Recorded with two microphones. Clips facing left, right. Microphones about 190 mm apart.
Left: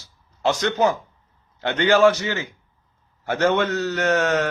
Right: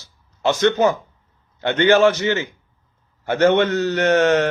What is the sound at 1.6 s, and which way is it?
Speech, 25° right (ahead or behind).